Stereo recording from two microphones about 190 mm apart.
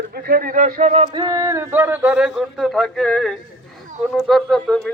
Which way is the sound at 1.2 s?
20° right (ahead or behind).